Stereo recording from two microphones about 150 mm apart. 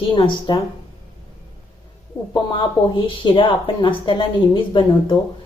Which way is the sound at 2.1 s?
35° left (ahead or behind).